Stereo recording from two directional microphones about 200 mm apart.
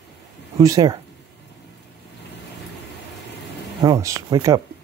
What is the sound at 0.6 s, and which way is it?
Mantra, 20° right (ahead or behind).